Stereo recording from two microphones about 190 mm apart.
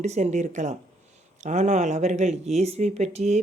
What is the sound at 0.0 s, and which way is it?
Speech, 35° right (ahead or behind).